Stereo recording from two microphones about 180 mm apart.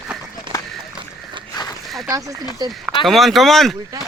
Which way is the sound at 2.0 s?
20° right (ahead or behind).